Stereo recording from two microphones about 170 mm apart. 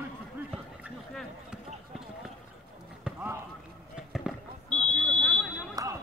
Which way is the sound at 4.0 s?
Centre (ahead or behind).